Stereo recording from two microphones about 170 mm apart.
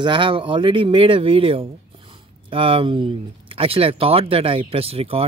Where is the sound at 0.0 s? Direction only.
30° right (ahead or behind).